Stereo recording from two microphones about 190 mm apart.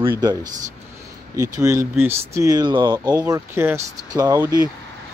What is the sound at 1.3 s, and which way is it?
Speech, 15° right (ahead or behind).